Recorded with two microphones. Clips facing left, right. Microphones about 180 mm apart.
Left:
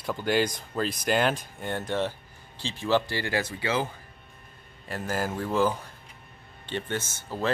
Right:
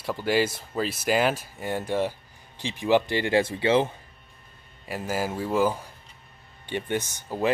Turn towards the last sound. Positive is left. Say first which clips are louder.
# right 4 dB
turn(degrees=-15)  # may be behind; listen again after turning